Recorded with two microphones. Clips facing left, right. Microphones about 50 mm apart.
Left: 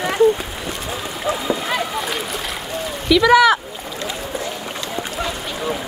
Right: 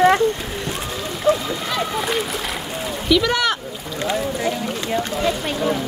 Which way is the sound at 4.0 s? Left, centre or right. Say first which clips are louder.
Right 5 dB; centre.